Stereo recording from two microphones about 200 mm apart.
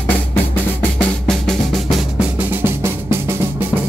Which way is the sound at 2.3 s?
10° right (ahead or behind).